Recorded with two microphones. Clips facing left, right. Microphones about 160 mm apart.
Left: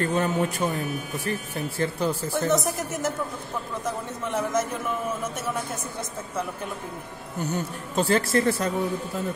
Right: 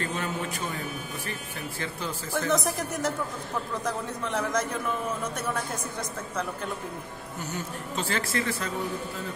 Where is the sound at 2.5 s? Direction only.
Centre (ahead or behind).